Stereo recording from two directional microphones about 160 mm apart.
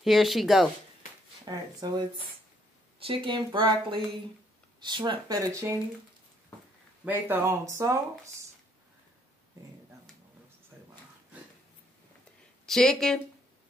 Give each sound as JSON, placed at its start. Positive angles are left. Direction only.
{"t": 0.0, "sound": "speech", "side_deg": 0}
{"t": 1.4, "sound": "speech", "side_deg": -25}
{"t": 7.1, "sound": "speech", "side_deg": -15}
{"t": 12.6, "sound": "speech", "side_deg": 5}